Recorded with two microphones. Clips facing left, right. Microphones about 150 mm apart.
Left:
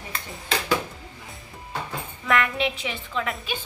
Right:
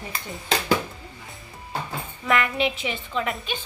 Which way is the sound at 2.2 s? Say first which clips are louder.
Right 1 dB; centre (ahead or behind).